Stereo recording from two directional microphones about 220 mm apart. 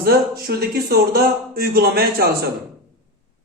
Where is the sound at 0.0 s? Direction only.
45° right (ahead or behind).